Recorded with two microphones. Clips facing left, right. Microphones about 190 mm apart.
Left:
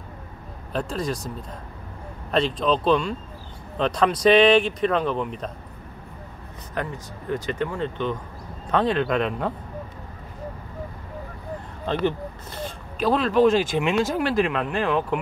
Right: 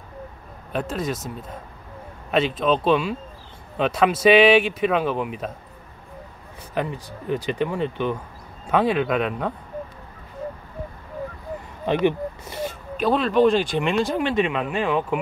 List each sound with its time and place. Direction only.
0.7 s speech: centre (ahead or behind)
6.7 s speech: 15° right (ahead or behind)
11.8 s speech: 15° right (ahead or behind)